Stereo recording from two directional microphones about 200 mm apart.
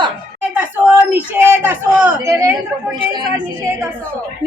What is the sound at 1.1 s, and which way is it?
A man's voice, 10° right (ahead or behind).